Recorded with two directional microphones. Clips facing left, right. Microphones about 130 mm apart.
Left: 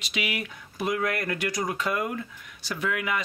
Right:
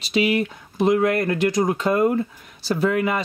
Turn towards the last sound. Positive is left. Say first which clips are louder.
# right 8 dB
turn(degrees=-35)  # may be behind; listen again after turning